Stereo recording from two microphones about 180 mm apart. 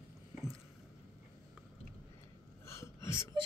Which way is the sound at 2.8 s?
15° left (ahead or behind).